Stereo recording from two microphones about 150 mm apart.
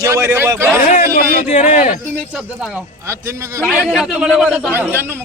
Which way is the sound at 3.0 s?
20° right (ahead or behind).